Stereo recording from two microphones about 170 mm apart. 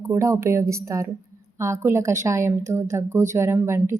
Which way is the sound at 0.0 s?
15° right (ahead or behind).